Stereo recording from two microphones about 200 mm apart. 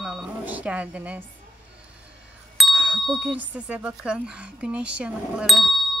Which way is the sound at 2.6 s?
5° right (ahead or behind).